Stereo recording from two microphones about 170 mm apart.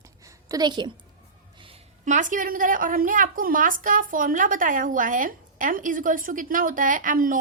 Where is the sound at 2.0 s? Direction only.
50° right (ahead or behind).